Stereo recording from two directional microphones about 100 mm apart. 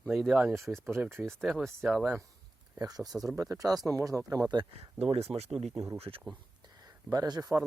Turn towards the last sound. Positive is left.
turn(degrees=-40)  # may be behind; listen again after turning